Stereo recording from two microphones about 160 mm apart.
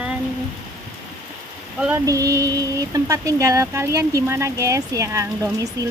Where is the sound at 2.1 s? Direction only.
20° right (ahead or behind).